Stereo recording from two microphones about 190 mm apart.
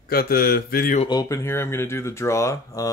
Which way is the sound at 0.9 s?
25° left (ahead or behind).